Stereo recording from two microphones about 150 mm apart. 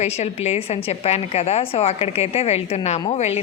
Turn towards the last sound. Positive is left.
turn(degrees=45)  # may be behind; listen again after turning